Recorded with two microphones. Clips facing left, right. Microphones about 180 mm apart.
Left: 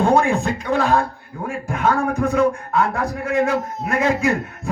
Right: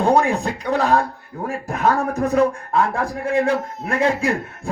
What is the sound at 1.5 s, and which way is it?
A man's voice, 35° right (ahead or behind).